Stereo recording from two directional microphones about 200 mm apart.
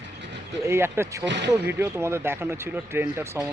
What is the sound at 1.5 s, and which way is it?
A man's voice, 15° right (ahead or behind).